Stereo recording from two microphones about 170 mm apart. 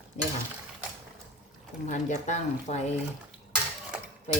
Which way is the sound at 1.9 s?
45° left (ahead or behind).